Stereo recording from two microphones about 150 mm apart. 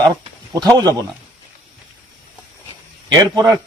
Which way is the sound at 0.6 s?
25° right (ahead or behind).